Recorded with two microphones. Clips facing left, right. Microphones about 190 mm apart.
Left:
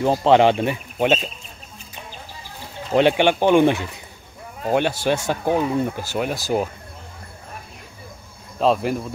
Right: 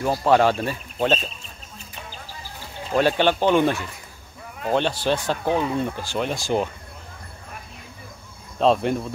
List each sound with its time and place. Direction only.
0.0 s speech: 25° left (ahead or behind)
2.9 s speech: 20° left (ahead or behind); by 6.7 s 5° left (ahead or behind)
8.5 s speech: 5° left (ahead or behind)